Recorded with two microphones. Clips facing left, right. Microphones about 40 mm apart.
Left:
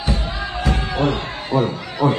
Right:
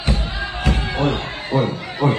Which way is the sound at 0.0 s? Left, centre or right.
Right.